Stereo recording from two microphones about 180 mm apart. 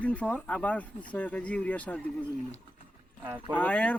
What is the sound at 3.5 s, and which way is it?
Speech, 10° left (ahead or behind).